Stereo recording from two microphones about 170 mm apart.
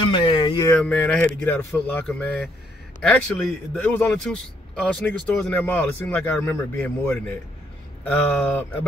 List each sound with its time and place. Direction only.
0.1 s music: 30° left (ahead or behind)
0.7 s speech: 10° left (ahead or behind)